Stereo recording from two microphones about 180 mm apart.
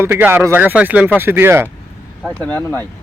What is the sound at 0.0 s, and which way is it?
Speech, 10° right (ahead or behind).